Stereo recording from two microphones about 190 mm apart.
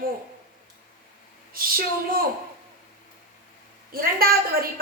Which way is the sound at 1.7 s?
50° right (ahead or behind).